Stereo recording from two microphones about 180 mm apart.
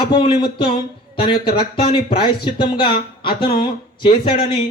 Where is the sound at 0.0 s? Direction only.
25° left (ahead or behind).